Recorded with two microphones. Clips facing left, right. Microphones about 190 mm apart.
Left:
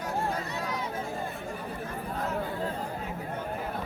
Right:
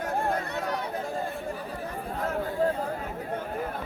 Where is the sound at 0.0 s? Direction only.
55° right (ahead or behind).